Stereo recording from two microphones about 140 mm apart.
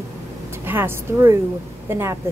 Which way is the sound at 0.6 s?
15° right (ahead or behind).